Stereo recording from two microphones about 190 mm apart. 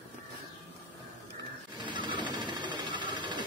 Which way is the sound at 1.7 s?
25° right (ahead or behind).